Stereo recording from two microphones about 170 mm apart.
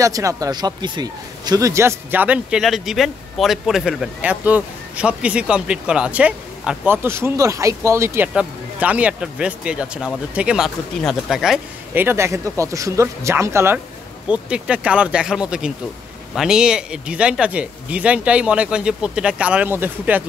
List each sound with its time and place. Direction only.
0.0 s speech: 20° right (ahead or behind)